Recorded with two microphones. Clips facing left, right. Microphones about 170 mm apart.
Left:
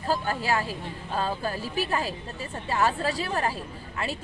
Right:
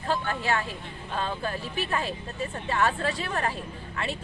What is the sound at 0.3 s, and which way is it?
Speech, 35° left (ahead or behind).